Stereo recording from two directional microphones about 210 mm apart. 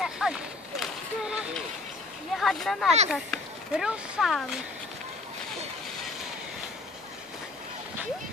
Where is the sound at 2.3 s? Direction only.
Centre (ahead or behind).